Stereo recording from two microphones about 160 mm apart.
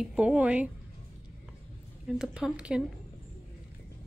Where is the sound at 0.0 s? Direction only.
5° right (ahead or behind).